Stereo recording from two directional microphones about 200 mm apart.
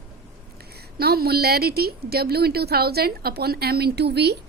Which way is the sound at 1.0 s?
50° right (ahead or behind).